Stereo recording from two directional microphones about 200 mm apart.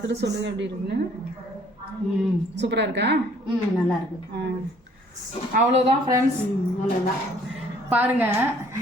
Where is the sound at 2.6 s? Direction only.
60° right (ahead or behind).